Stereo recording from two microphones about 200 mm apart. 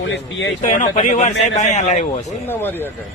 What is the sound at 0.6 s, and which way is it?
A man's voice, 40° left (ahead or behind).